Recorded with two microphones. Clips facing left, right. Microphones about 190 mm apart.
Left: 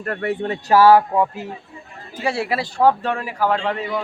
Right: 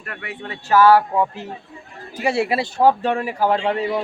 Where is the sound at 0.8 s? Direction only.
25° left (ahead or behind).